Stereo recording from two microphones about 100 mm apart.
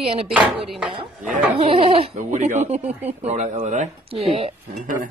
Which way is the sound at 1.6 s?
80° right.